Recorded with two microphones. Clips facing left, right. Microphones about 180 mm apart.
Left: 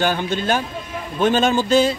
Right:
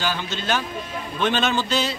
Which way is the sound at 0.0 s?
55° left (ahead or behind).